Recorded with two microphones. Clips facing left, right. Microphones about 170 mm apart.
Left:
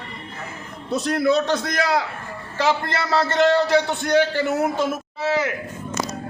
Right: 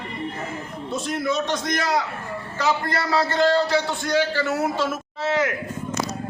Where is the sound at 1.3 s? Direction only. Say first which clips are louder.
Left 5 dB; 35° left (ahead or behind).